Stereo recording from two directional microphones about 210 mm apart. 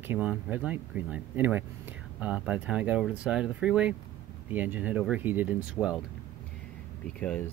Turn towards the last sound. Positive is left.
turn(degrees=5)  # may be behind; listen again after turning